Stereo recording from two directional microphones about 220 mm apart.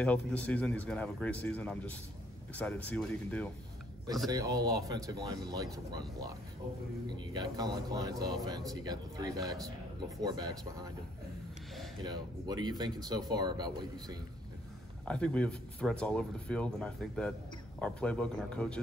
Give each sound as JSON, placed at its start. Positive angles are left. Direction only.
{"t": 0.0, "sound": "speech", "side_deg": 5}
{"t": 4.3, "sound": "speech", "side_deg": -15}
{"t": 10.2, "sound": "speech", "side_deg": -15}
{"t": 12.0, "sound": "speech", "side_deg": -20}
{"t": 15.0, "sound": "speech", "side_deg": 5}